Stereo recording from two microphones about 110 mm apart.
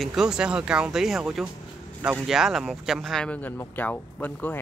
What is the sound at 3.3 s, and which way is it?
Speech, 15° left (ahead or behind).